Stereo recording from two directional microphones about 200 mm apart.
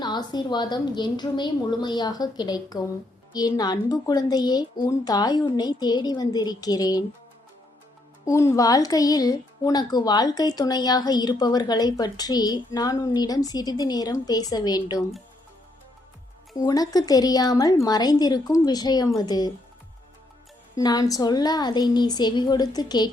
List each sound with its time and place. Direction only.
0.0 s speech: 20° left (ahead or behind)
8.2 s speech: 15° left (ahead or behind)
16.6 s speech: 20° left (ahead or behind)
20.7 s speech: 20° left (ahead or behind)